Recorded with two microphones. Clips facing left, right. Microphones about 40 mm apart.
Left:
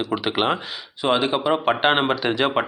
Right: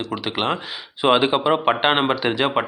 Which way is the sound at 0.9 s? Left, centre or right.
Right.